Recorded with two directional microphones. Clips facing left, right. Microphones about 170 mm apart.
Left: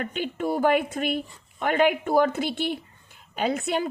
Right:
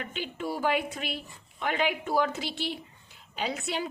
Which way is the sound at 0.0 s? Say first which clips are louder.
Left 6 dB; 50° left (ahead or behind).